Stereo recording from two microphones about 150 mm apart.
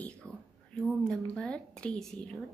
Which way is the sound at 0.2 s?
15° right (ahead or behind).